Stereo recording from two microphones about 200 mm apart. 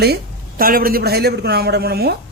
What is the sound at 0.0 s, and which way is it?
Speech, 50° right (ahead or behind).